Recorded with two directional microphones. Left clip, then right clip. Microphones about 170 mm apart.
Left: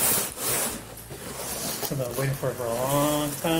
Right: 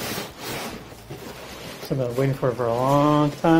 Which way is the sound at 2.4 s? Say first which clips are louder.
Right 6 dB; 15° right (ahead or behind).